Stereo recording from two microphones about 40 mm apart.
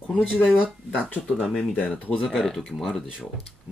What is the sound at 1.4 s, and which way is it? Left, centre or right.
Speech, centre.